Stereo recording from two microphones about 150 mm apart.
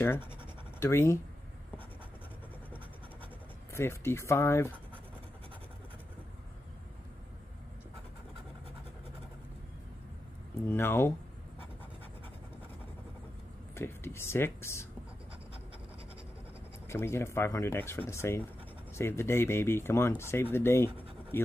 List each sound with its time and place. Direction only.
0.0 s speech: 15° left (ahead or behind)
3.7 s speech: 20° left (ahead or behind)
10.7 s speech: 15° left (ahead or behind)
13.7 s speech: 15° left (ahead or behind)
16.8 s speech: 15° left (ahead or behind)